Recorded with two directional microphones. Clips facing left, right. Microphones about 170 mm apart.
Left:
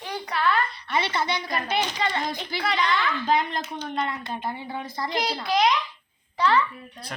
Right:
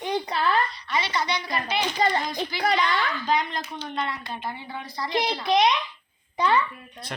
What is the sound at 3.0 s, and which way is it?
Speech, 50° left (ahead or behind).